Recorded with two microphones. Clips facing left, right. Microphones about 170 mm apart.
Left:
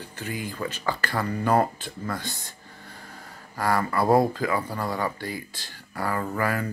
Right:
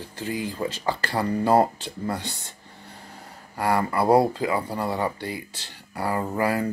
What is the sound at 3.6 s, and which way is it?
Speech, 25° right (ahead or behind).